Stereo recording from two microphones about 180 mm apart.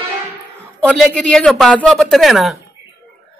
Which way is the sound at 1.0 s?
5° left (ahead or behind).